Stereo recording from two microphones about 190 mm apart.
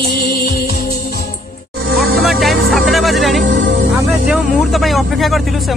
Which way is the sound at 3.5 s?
70° right (ahead or behind).